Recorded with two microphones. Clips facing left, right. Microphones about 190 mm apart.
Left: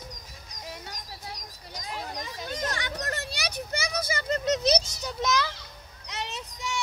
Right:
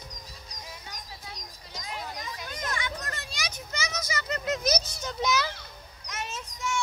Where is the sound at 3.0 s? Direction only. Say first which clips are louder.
Left 5 dB; 65° left (ahead or behind).